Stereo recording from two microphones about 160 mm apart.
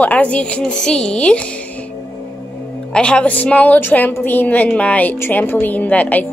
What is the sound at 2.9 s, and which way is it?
A woman's voice, 5° left (ahead or behind).